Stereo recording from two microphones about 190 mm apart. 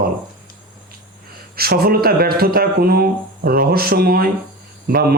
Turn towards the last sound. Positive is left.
turn(degrees=-50)  # may be behind; listen again after turning